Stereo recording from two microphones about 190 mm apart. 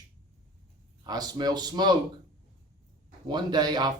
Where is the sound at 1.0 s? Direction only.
20° right (ahead or behind).